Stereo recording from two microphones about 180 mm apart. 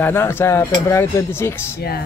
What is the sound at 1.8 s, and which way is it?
Speech, 60° left (ahead or behind).